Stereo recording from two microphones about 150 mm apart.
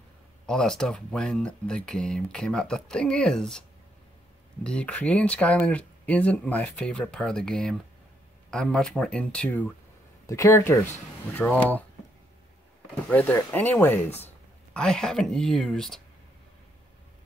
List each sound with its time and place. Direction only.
0.5 s speech: 5° left (ahead or behind)
4.6 s speech: 5° left (ahead or behind)
10.2 s speech: 20° left (ahead or behind)
13.1 s speech: 10° left (ahead or behind)